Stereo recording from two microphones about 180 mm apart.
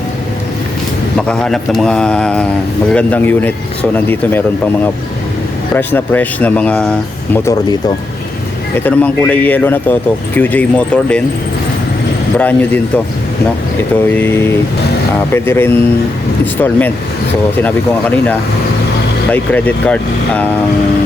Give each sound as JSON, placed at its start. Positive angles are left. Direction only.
{"t": 1.3, "sound": "speech", "side_deg": 5}
{"t": 5.7, "sound": "speech", "side_deg": 10}
{"t": 7.3, "sound": "speech", "side_deg": 20}
{"t": 8.8, "sound": "speech", "side_deg": 10}
{"t": 12.4, "sound": "speech", "side_deg": 10}
{"t": 13.9, "sound": "speech", "side_deg": 10}
{"t": 19.3, "sound": "speech", "side_deg": 10}